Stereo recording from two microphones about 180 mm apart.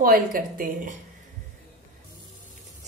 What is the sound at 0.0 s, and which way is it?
Speech, 50° right (ahead or behind).